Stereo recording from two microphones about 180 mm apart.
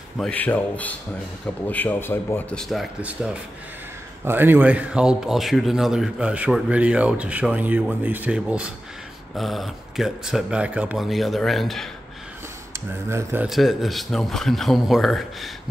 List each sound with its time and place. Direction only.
0.2 s a man's voice: 10° left (ahead or behind)
2.7 s speech: 5° right (ahead or behind)
12.9 s speech: 10° right (ahead or behind)
13.5 s speech: centre (ahead or behind)